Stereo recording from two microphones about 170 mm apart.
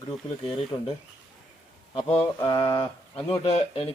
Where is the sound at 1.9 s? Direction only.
35° left (ahead or behind).